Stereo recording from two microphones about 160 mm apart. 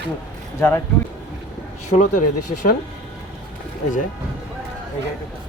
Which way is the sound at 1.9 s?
50° left (ahead or behind).